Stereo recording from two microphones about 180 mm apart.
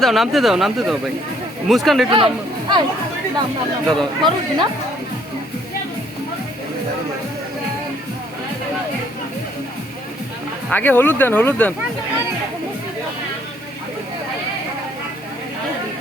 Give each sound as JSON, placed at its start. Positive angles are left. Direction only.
{"t": 0.0, "sound": "speech", "side_deg": 0}
{"t": 2.0, "sound": "speech", "side_deg": -30}
{"t": 3.8, "sound": "speech", "side_deg": -25}
{"t": 10.7, "sound": "speech", "side_deg": 10}